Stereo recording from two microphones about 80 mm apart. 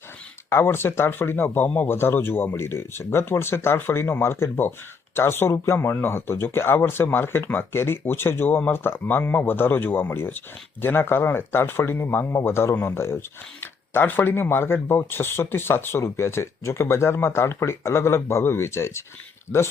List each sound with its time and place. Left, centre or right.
0.5 s speech: left